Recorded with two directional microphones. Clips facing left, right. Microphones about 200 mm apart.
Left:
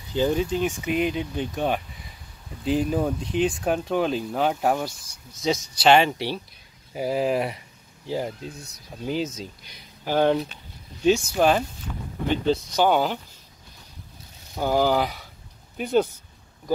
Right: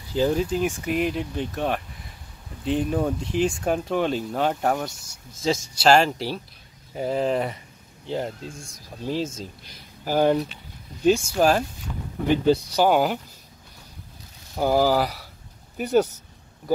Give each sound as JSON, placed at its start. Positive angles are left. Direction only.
{"t": 0.1, "sound": "speech", "side_deg": 0}
{"t": 8.5, "sound": "speech", "side_deg": -50}
{"t": 9.4, "sound": "speech", "side_deg": -5}
{"t": 14.6, "sound": "speech", "side_deg": -5}